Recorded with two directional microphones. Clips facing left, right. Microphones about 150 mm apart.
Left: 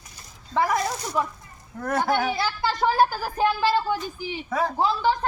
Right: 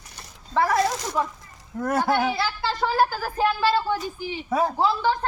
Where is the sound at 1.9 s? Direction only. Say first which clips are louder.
Right 1 dB; 20° right (ahead or behind).